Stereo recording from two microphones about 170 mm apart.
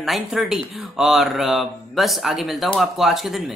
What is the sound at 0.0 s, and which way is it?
Speech, centre (ahead or behind).